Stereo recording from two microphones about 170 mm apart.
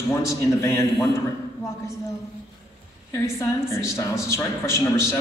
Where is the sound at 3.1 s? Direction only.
15° left (ahead or behind).